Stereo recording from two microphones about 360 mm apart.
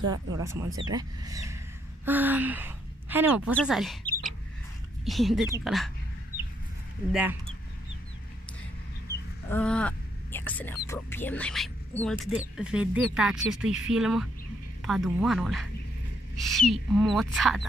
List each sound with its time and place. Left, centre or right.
0.1 s speech: centre
0.7 s speech: right
0.9 s a woman's voice: centre
7.1 s speech: centre
9.5 s speech: centre